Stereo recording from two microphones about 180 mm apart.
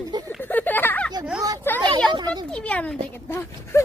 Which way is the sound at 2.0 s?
25° right (ahead or behind).